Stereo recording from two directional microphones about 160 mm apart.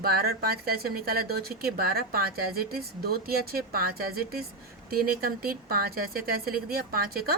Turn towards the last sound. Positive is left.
turn(degrees=-70)  # may be behind; listen again after turning